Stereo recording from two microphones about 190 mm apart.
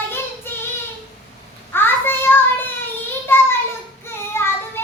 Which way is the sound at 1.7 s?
10° left (ahead or behind).